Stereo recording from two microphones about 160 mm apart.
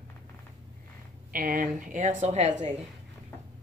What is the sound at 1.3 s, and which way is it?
A woman's voice, 60° right (ahead or behind).